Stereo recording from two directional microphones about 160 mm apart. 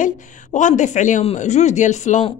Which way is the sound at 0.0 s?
50° left (ahead or behind).